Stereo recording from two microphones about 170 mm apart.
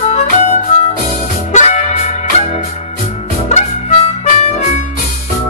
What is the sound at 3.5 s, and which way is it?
Harmonica, 40° left (ahead or behind).